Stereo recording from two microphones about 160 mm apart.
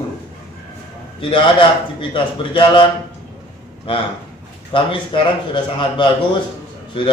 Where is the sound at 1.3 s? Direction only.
30° left (ahead or behind).